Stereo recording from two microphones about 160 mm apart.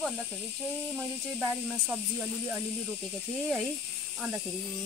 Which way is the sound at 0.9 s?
10° right (ahead or behind).